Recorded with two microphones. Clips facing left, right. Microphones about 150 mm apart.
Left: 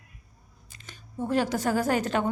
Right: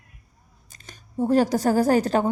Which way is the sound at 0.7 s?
40° right (ahead or behind).